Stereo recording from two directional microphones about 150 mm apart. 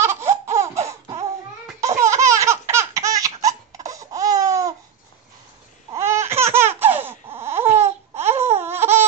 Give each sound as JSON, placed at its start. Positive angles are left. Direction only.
{"t": 0.0, "sound": "laughter", "side_deg": -15}
{"t": 5.9, "sound": "laughter", "side_deg": -20}
{"t": 8.3, "sound": "a sound", "side_deg": -15}